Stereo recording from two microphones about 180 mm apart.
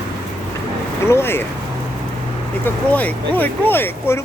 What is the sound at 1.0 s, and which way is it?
Speech, 15° left (ahead or behind).